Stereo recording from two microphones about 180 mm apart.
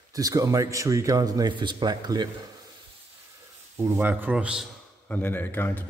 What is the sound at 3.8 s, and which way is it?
Speech, 10° right (ahead or behind).